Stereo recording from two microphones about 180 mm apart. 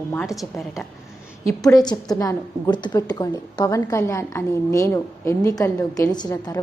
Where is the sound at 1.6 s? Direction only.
20° left (ahead or behind).